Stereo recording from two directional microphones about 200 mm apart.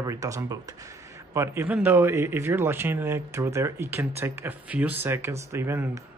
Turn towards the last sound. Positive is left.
turn(degrees=-10)  # may be behind; listen again after turning